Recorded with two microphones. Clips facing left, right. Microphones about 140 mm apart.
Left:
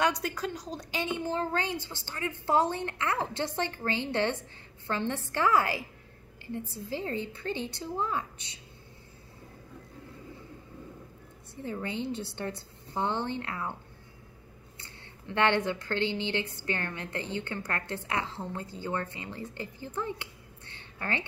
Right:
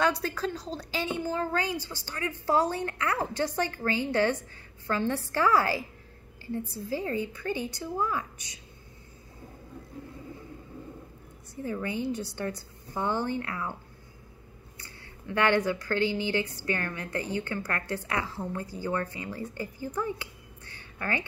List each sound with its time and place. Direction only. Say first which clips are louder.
0.0 s a woman's voice: right 2 dB; 20° left (ahead or behind)
6.9 s a woman's voice: right 3 dB; 25° left (ahead or behind)
11.6 s a woman's voice: right 3 dB; 25° left (ahead or behind)
14.8 s a woman's voice: right 3 dB; 25° left (ahead or behind)